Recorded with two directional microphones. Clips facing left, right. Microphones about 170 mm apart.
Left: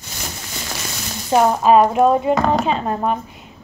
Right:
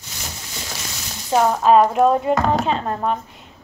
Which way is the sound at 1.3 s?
10° left (ahead or behind).